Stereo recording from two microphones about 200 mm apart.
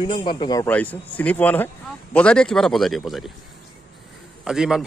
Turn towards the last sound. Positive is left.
turn(degrees=-5)  # may be behind; listen again after turning